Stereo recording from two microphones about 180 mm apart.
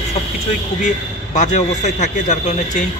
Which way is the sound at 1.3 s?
40° left (ahead or behind).